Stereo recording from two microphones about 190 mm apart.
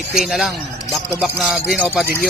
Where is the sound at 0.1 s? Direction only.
Centre (ahead or behind).